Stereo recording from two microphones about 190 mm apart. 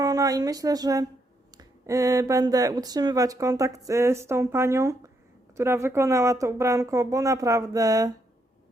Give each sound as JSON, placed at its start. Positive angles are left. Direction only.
{"t": 0.0, "sound": "a woman's voice", "side_deg": -20}